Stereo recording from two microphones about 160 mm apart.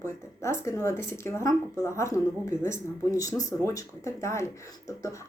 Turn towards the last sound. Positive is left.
turn(degrees=20)  # may be behind; listen again after turning